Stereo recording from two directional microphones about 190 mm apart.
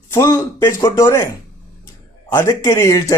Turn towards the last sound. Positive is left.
turn(degrees=15)  # may be behind; listen again after turning